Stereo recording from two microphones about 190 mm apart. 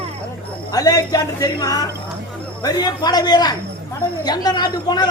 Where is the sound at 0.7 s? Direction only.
20° left (ahead or behind).